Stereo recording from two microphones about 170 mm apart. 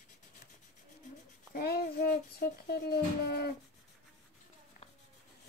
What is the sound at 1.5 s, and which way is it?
Speech, 65° left (ahead or behind).